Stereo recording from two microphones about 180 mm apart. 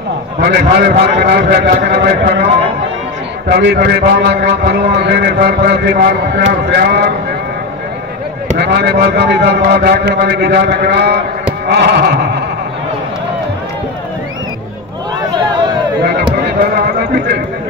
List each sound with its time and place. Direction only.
0.4 s a man's voice: 60° right (ahead or behind)
3.4 s a man's voice: 65° right (ahead or behind)
8.5 s a man's voice: 65° right (ahead or behind)